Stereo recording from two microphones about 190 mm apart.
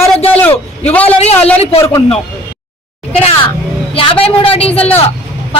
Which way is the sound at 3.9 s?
30° left (ahead or behind).